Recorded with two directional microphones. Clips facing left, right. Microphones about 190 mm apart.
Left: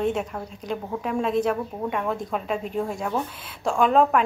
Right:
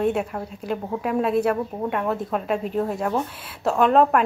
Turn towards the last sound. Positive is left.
turn(degrees=0)  # may be behind; listen again after turning